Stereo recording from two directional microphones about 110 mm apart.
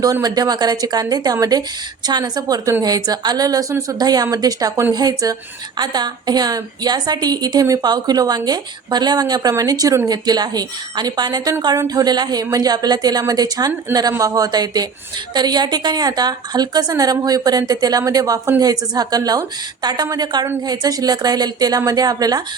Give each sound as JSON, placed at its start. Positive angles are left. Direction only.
{"t": 0.0, "sound": "a woman's voice", "side_deg": -35}